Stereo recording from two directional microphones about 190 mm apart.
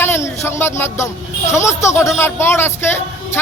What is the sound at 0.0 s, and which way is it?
A man's voice, 10° left (ahead or behind).